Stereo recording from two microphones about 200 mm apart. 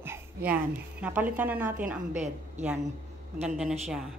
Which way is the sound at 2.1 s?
35° right (ahead or behind).